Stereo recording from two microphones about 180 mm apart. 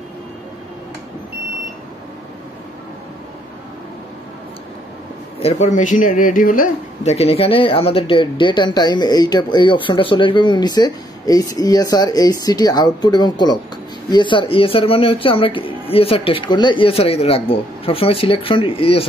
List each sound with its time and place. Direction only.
5.4 s a man's voice: 40° left (ahead or behind)